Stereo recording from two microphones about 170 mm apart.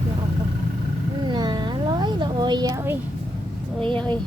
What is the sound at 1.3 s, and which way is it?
Cat, 25° right (ahead or behind).